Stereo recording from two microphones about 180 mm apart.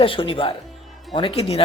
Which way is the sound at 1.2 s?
30° left (ahead or behind).